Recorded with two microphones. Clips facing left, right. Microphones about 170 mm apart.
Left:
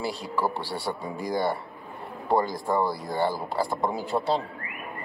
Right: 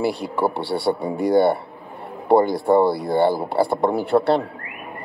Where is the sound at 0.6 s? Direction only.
65° right (ahead or behind).